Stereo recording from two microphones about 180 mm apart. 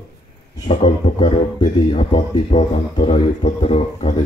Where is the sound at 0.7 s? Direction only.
30° left (ahead or behind).